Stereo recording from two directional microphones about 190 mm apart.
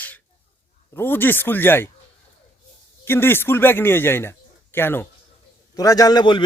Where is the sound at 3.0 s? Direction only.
10° left (ahead or behind).